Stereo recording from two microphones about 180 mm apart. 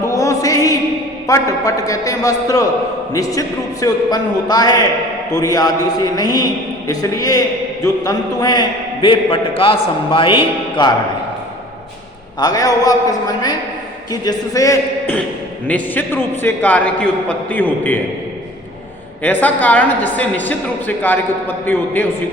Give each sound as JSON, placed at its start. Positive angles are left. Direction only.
{"t": 0.0, "sound": "music", "side_deg": 20}
{"t": 1.3, "sound": "a man's voice", "side_deg": 20}
{"t": 12.4, "sound": "a man's voice", "side_deg": 20}
{"t": 19.2, "sound": "a woman's voice", "side_deg": 10}